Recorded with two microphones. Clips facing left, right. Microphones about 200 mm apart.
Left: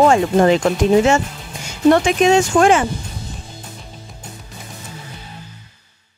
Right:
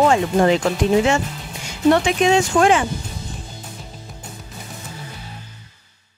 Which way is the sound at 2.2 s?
45° left (ahead or behind).